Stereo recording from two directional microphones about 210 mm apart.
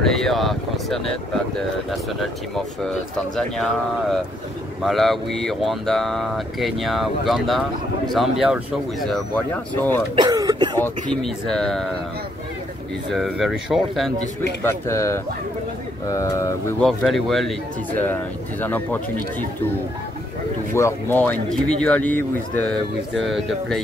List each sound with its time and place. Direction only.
0.0 s speech: centre (ahead or behind)
3.3 s speech: centre (ahead or behind)
9.8 s speech: 10° left (ahead or behind)
10.1 s speech: 20° right (ahead or behind)
10.8 s speech: 5° left (ahead or behind)
13.1 s speech: centre (ahead or behind)
14.6 s speech: 15° left (ahead or behind)
16.8 s speech: centre (ahead or behind)
18.6 s speech: 10° left (ahead or behind)
20.7 s speech: 10° left (ahead or behind)